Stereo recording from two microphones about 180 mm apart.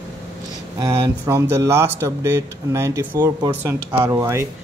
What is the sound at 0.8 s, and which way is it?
A man's voice, 15° right (ahead or behind).